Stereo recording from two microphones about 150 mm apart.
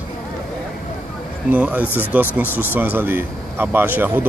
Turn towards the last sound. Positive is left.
turn(degrees=-15)  # may be behind; listen again after turning